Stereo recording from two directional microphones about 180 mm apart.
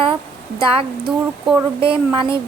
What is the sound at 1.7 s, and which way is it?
Speech, 30° right (ahead or behind).